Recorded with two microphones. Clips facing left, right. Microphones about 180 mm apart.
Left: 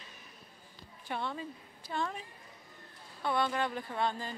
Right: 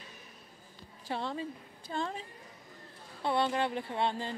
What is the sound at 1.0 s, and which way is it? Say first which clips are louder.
A woman's voice: right 2 dB; 30° right (ahead or behind).